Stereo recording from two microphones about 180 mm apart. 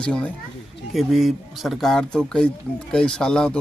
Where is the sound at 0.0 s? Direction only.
5° left (ahead or behind).